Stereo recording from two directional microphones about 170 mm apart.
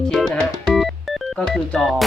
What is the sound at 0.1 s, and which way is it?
Music, centre (ahead or behind).